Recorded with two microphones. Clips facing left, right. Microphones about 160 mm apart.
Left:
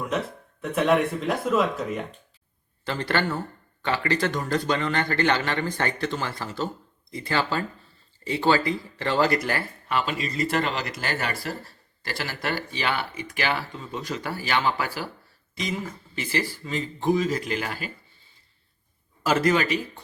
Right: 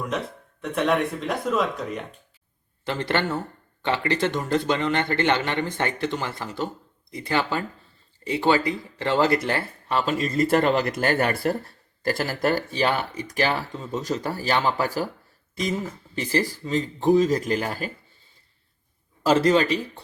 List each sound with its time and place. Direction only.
0.1 s speech: 5° left (ahead or behind)
2.8 s speech: 20° right (ahead or behind)
10.1 s speech: 45° right (ahead or behind)
16.1 s speech: 40° right (ahead or behind)
19.2 s speech: 30° right (ahead or behind)